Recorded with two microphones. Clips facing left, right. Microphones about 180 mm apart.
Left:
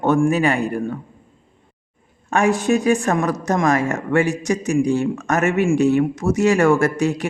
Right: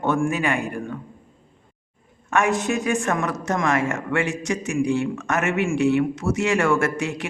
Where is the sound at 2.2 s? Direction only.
30° left (ahead or behind).